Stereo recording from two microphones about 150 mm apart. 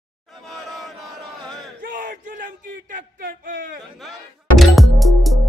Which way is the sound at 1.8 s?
65° right (ahead or behind).